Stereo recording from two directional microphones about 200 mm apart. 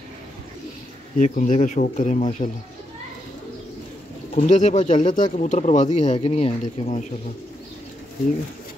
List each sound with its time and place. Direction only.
1.1 s speech: 40° left (ahead or behind)
4.4 s speech: 35° left (ahead or behind)